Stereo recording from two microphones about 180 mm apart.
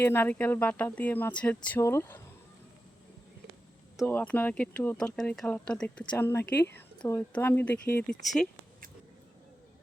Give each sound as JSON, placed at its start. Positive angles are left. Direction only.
{"t": 0.0, "sound": "speech", "side_deg": 15}
{"t": 4.0, "sound": "speech", "side_deg": 10}
{"t": 6.4, "sound": "speech", "side_deg": 70}
{"t": 6.7, "sound": "speech", "side_deg": 10}